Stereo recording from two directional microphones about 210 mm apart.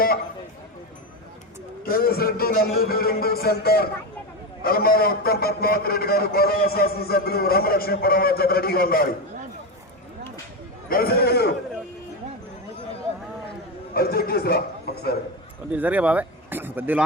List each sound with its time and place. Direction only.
1.8 s a man's voice: 45° left (ahead or behind)
10.8 s a man's voice: 45° left (ahead or behind)
13.9 s a man's voice: 45° left (ahead or behind)
15.7 s speech: 5° right (ahead or behind)